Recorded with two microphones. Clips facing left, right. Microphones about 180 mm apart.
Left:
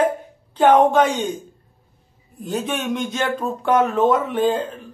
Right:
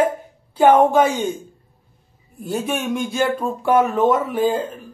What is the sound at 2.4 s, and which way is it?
A woman's voice, 10° right (ahead or behind).